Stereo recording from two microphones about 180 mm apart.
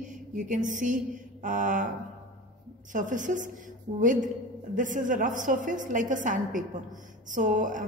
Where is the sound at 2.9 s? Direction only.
45° right (ahead or behind).